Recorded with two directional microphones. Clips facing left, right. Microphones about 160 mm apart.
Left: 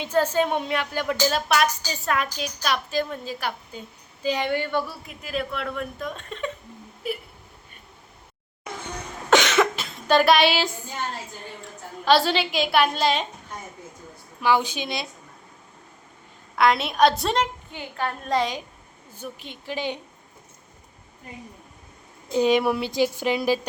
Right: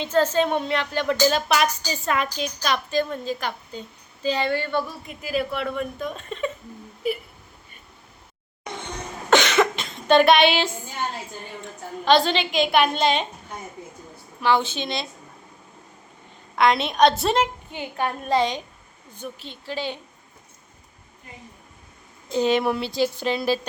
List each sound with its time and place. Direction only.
0.0 s a woman's voice: 10° left (ahead or behind)
5.0 s speech: 5° right (ahead or behind)
8.6 s cough: 5° left (ahead or behind)
12.0 s speech: 5° left (ahead or behind)
14.4 s a woman's voice: 10° left (ahead or behind)
16.6 s speech: 5° left (ahead or behind)
17.7 s a woman's voice: 20° right (ahead or behind)
18.3 s a woman's voice: centre (ahead or behind)
22.3 s a woman's voice: 10° left (ahead or behind)